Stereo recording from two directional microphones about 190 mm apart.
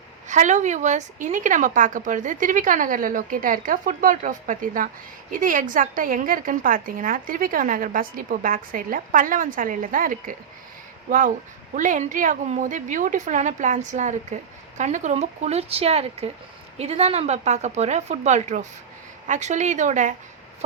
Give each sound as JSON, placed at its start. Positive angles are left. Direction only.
{"t": 0.3, "sound": "a woman's voice", "side_deg": -40}
{"t": 11.7, "sound": "a woman's voice", "side_deg": -40}